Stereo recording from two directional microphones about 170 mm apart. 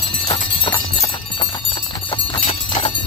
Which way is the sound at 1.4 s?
30° left (ahead or behind).